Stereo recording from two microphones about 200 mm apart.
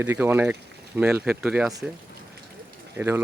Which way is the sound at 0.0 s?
10° right (ahead or behind).